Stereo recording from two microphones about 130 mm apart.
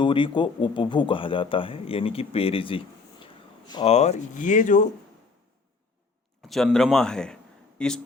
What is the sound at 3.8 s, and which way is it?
Speech, 55° left (ahead or behind).